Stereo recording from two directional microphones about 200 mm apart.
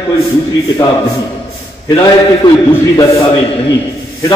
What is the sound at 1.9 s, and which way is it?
A man's voice, 20° left (ahead or behind).